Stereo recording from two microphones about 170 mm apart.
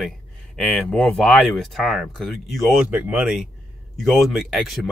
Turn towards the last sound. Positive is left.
turn(degrees=0)  # may be behind; listen again after turning